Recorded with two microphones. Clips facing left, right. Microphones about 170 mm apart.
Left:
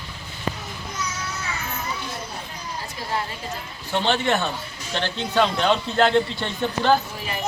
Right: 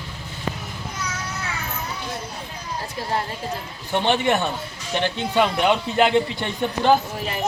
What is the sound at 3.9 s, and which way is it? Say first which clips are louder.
Speech: right 2 dB; 15° right (ahead or behind).